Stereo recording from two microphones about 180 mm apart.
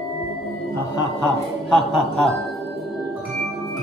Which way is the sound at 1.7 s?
Centre (ahead or behind).